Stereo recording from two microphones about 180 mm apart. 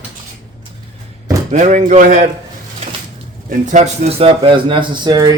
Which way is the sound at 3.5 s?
40° right (ahead or behind).